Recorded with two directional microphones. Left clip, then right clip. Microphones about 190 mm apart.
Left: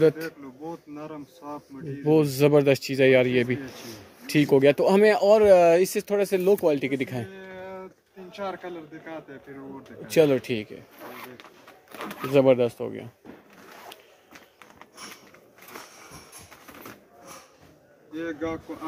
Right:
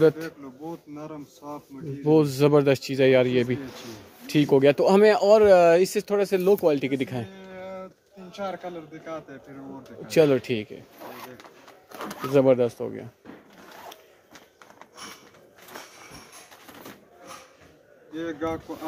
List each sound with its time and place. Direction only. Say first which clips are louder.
0.0 s a man's voice: right 1 dB; centre (ahead or behind)
7.4 s a sound: right 1 dB; 20° right (ahead or behind)
8.4 s a man's voice: right 1 dB; 20° right (ahead or behind)
10.0 s a man's voice: right 1 dB; centre (ahead or behind)
13.8 s walk: right 1 dB; centre (ahead or behind)
18.1 s a man's voice: right 1 dB; 5° right (ahead or behind)